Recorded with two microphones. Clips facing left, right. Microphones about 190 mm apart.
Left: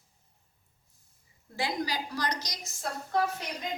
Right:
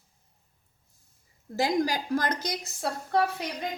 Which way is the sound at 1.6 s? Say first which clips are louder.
Right 6 dB; 45° right (ahead or behind).